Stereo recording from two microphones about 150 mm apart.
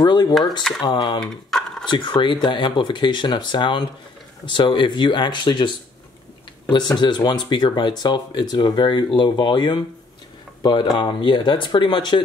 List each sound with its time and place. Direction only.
0.0 s speech: 30° left (ahead or behind)
0.6 s speech: centre (ahead or behind)
0.8 s speech: 30° left (ahead or behind)
1.5 s a sound: 5° left (ahead or behind)
1.9 s speech: 30° left (ahead or behind)
6.7 s speech: 30° left (ahead or behind)